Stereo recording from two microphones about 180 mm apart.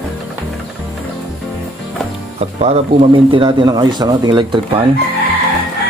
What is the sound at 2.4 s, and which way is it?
Speech, 35° right (ahead or behind).